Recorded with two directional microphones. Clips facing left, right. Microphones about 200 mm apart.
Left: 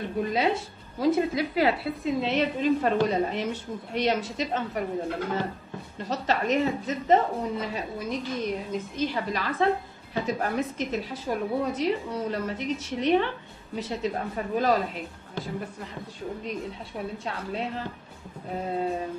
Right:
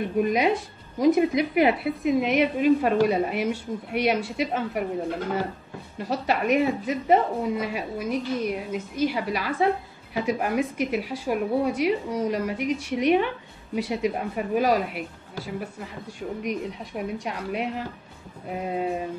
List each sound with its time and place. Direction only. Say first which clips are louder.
0.2 s a woman's voice: right 3 dB; 15° right (ahead or behind)
5.9 s a woman's voice: right 2 dB; 10° right (ahead or behind)
16.4 s a woman's voice: right 4 dB; 15° right (ahead or behind)